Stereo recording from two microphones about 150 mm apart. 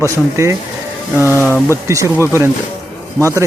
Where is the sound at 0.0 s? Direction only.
20° right (ahead or behind).